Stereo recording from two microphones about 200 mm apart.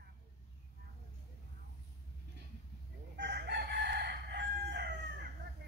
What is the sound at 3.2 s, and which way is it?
Crowing, 55° right (ahead or behind).